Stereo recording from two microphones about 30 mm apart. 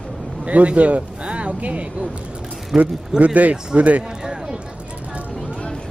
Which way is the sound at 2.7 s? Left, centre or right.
Centre.